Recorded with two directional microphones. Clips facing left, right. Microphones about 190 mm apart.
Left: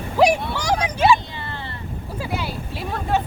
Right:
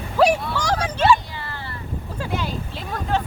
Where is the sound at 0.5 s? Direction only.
10° left (ahead or behind).